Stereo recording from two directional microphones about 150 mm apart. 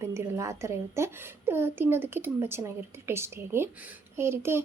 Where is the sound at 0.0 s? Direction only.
15° right (ahead or behind).